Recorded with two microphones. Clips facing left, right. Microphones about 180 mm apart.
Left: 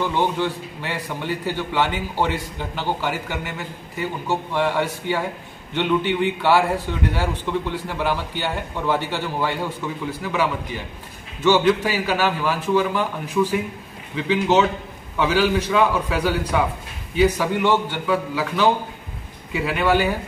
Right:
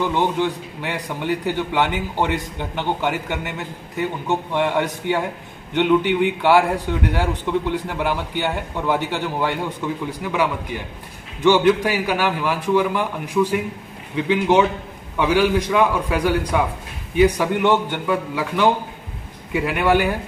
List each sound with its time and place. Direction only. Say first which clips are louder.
0.1 s a man's voice: right 2 dB; 15° right (ahead or behind)